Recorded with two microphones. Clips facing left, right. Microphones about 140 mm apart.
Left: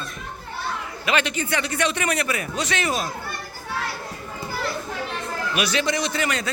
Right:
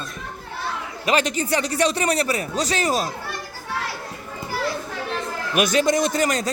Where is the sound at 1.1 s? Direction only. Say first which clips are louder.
Right 3 dB; 35° right (ahead or behind).